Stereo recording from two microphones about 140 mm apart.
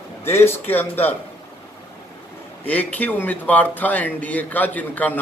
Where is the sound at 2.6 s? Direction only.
10° left (ahead or behind).